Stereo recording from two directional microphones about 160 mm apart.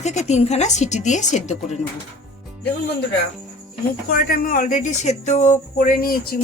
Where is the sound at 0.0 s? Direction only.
45° left (ahead or behind).